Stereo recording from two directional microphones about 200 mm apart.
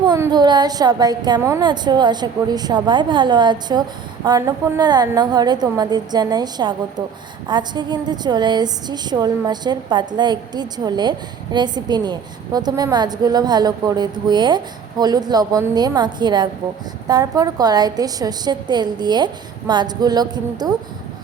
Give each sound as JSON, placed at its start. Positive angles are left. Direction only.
{"t": 0.0, "sound": "a woman's voice", "side_deg": -20}